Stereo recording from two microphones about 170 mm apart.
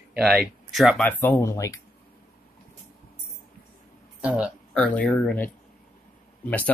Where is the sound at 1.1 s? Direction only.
10° left (ahead or behind).